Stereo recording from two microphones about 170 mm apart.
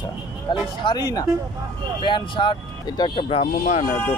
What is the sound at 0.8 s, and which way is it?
Speech, 25° left (ahead or behind).